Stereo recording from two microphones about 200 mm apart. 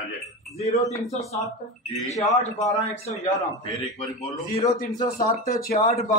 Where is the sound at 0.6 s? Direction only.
30° left (ahead or behind).